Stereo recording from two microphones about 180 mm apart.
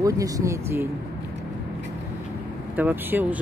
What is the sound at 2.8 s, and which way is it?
Speech, 10° right (ahead or behind).